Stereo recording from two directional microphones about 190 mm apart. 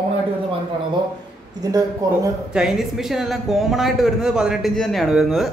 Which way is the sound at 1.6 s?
20° right (ahead or behind).